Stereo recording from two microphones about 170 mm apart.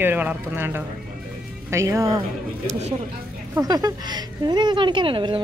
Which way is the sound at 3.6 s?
20° right (ahead or behind).